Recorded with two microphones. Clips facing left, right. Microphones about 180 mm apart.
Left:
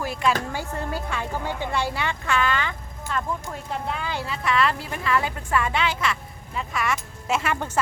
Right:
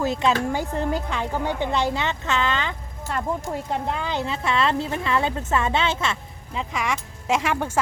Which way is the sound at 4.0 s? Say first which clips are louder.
Right 2 dB; 20° right (ahead or behind).